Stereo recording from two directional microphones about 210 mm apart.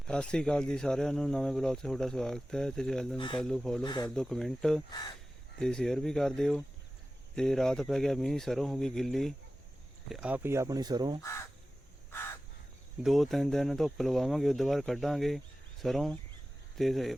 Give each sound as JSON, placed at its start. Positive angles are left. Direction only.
{"t": 0.1, "sound": "speech", "side_deg": 5}
{"t": 3.8, "sound": "speech", "side_deg": 20}
{"t": 4.1, "sound": "speech", "side_deg": 0}
{"t": 11.2, "sound": "speech", "side_deg": 15}
{"t": 13.0, "sound": "speech", "side_deg": 0}